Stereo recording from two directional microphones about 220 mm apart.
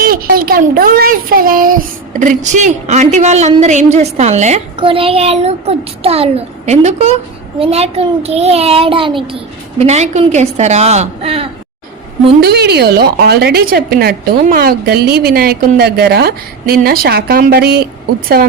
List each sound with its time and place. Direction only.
0.0 s a child's voice: 40° right (ahead or behind); by 11.4 s 25° right (ahead or behind)
12.4 s a woman's voice: 45° right (ahead or behind)